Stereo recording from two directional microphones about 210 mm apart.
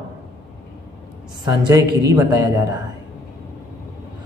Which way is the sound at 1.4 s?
20° right (ahead or behind).